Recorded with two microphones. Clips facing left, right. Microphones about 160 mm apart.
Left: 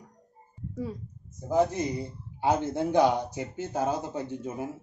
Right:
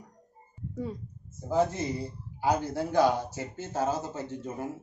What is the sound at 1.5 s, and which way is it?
Speech, 15° left (ahead or behind).